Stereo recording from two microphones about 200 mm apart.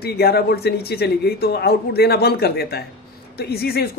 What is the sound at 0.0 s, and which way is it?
Speech, 50° left (ahead or behind).